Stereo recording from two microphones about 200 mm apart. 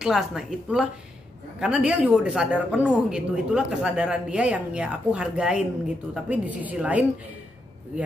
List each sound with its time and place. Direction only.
0.0 s a woman's voice: centre (ahead or behind)